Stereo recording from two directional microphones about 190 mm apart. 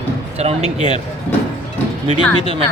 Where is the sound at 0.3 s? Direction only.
35° right (ahead or behind).